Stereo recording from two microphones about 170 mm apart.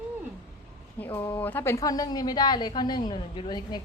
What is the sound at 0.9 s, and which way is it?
A woman's voice, 10° left (ahead or behind).